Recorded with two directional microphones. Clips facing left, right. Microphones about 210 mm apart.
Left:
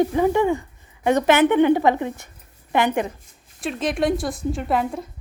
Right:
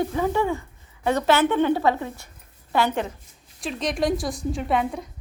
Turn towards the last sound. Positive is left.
turn(degrees=0)  # may be behind; listen again after turning